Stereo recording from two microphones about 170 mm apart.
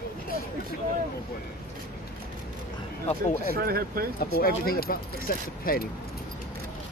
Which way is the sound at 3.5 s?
60° right (ahead or behind).